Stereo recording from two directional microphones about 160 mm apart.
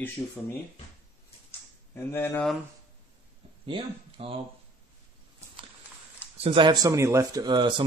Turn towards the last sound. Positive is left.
turn(degrees=-30)  # may be behind; listen again after turning